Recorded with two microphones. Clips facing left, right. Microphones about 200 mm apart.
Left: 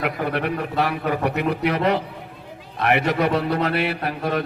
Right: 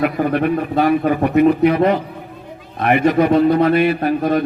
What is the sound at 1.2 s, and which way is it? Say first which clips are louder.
Speech: right 11 dB; 70° left (ahead or behind).